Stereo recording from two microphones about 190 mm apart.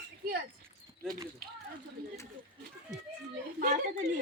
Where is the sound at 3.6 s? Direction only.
45° right (ahead or behind).